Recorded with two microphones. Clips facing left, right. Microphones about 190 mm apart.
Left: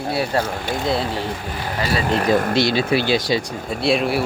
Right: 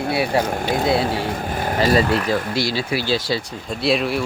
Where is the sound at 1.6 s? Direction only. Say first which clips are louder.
Right 6 dB; 45° right (ahead or behind).